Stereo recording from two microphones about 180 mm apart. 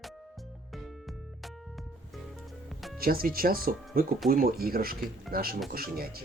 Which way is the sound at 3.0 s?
55° right (ahead or behind).